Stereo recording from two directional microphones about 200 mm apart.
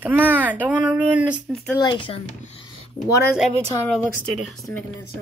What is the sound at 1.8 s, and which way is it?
Speech, 25° left (ahead or behind).